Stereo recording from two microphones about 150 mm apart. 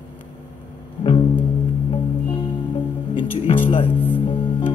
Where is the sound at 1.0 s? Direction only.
40° left (ahead or behind).